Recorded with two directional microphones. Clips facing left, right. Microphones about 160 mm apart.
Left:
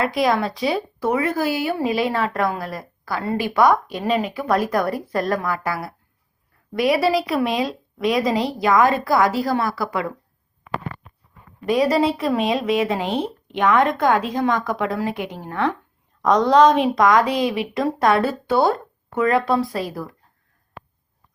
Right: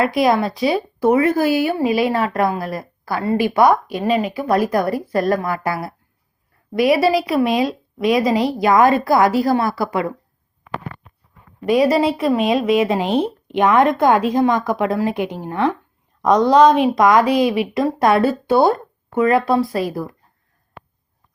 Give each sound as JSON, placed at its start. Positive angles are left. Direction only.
{"t": 0.0, "sound": "speech", "side_deg": -10}
{"t": 5.4, "sound": "speech", "side_deg": -20}
{"t": 11.6, "sound": "speech", "side_deg": -10}
{"t": 16.3, "sound": "speech", "side_deg": -5}